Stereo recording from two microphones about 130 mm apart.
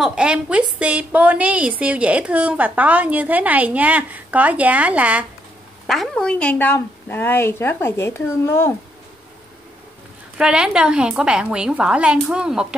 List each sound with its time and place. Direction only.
0.0 s a woman's voice: 5° right (ahead or behind)
5.9 s a woman's voice: 5° left (ahead or behind); by 8.7 s 20° left (ahead or behind)
10.3 s a woman's voice: 5° right (ahead or behind)